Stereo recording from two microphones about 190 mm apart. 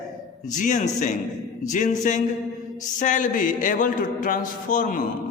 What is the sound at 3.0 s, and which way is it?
A man's voice, 40° left (ahead or behind).